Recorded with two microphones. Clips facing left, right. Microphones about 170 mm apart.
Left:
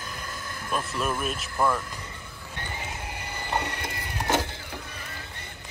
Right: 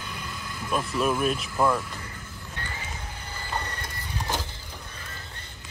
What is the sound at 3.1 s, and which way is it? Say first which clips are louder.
Vehicle: left 4 dB; 70° left (ahead or behind).